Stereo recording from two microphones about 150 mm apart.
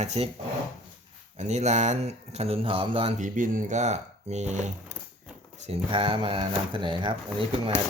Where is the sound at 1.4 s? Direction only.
50° right (ahead or behind).